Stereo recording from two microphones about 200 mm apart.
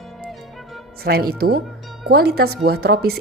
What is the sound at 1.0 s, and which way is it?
A woman's voice, 50° right (ahead or behind).